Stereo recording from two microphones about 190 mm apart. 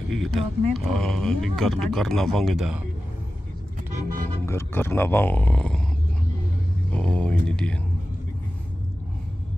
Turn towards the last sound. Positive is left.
turn(degrees=5)  # may be behind; listen again after turning